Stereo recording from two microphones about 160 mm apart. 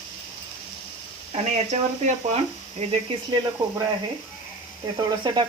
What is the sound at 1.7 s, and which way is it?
Speech, 45° right (ahead or behind).